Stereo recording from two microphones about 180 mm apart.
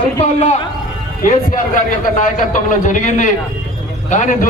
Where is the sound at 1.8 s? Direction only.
45° left (ahead or behind).